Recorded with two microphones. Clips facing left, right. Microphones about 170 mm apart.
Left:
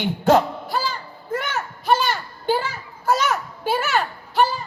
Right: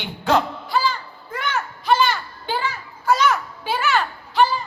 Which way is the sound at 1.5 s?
45° left (ahead or behind).